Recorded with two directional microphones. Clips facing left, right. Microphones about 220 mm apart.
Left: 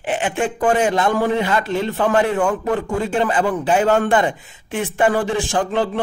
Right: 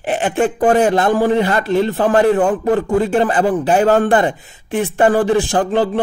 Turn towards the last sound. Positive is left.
turn(degrees=-35)  # may be behind; listen again after turning